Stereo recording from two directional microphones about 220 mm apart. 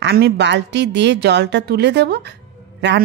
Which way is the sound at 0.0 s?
50° right (ahead or behind).